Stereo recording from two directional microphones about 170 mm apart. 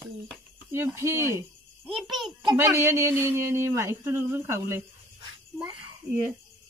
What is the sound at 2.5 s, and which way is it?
Speech, 15° right (ahead or behind).